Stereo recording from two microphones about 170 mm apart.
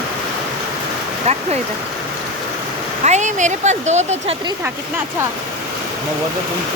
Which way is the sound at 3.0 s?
45° right (ahead or behind).